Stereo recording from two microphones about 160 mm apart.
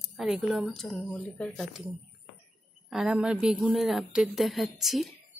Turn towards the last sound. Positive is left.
turn(degrees=0)  # may be behind; listen again after turning